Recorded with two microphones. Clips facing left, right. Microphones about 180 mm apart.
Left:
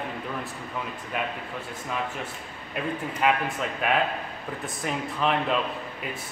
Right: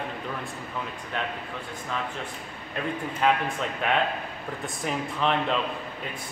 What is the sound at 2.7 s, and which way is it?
Speech, 5° left (ahead or behind).